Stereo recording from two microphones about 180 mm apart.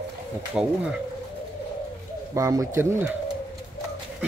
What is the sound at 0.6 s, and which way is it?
Speech, 5° right (ahead or behind).